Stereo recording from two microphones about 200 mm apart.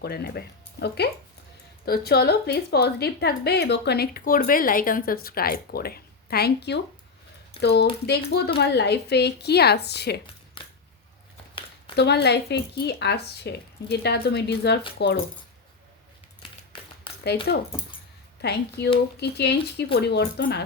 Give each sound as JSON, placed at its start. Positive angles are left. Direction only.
{"t": 0.0, "sound": "speech", "side_deg": 50}
{"t": 10.6, "sound": "camera", "side_deg": 25}
{"t": 11.9, "sound": "speech", "side_deg": 55}
{"t": 17.1, "sound": "a sound", "side_deg": 25}
{"t": 18.4, "sound": "speech", "side_deg": 55}